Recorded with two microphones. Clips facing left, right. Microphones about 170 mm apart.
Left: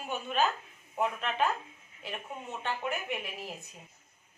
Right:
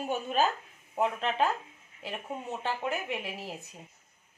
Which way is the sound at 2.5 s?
35° right (ahead or behind).